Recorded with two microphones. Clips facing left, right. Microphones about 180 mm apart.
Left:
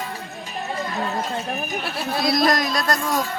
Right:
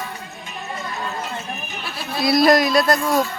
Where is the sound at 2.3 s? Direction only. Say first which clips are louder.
Right 8 dB; 5° right (ahead or behind).